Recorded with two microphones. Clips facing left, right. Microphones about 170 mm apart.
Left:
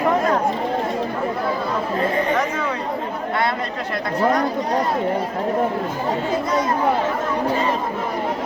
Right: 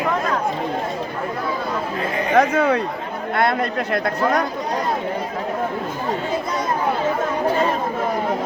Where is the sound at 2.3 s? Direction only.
65° right (ahead or behind).